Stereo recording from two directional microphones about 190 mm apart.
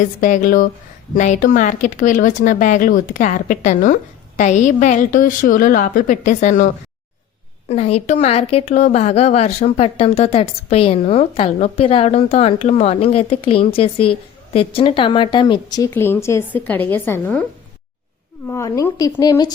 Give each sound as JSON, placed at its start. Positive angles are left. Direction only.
{"t": 0.0, "sound": "speech", "side_deg": 40}
{"t": 7.7, "sound": "a woman's voice", "side_deg": 35}
{"t": 18.4, "sound": "a woman's voice", "side_deg": 15}